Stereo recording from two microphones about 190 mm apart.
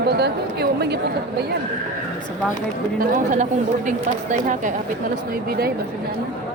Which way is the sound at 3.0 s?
45° right (ahead or behind).